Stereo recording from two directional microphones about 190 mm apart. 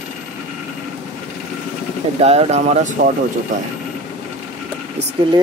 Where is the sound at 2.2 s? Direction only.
35° right (ahead or behind).